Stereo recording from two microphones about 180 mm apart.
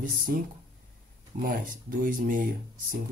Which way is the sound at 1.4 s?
50° right (ahead or behind).